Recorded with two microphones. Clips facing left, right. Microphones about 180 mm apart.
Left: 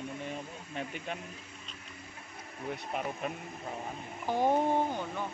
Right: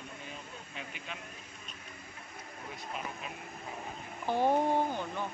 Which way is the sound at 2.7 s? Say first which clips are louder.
Left 6 dB; 55° left (ahead or behind).